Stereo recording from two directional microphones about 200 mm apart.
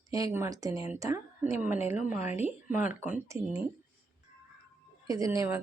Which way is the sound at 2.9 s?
10° right (ahead or behind).